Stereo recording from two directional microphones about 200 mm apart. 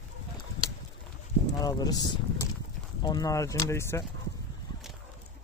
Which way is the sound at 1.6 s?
20° left (ahead or behind).